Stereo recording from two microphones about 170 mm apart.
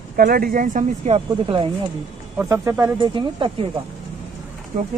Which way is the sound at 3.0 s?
30° right (ahead or behind).